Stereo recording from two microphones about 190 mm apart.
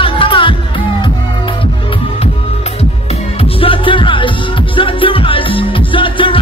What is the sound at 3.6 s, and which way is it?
Music, 25° left (ahead or behind).